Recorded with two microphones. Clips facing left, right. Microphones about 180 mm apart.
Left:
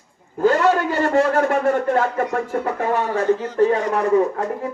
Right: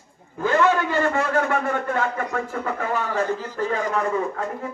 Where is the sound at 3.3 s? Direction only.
70° left (ahead or behind).